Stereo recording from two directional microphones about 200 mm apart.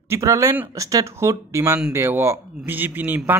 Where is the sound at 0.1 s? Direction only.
15° right (ahead or behind).